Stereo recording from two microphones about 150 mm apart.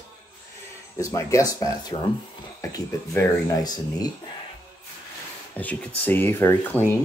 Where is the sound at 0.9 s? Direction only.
20° left (ahead or behind).